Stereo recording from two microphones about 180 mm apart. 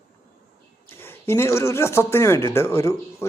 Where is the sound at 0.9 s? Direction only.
15° left (ahead or behind).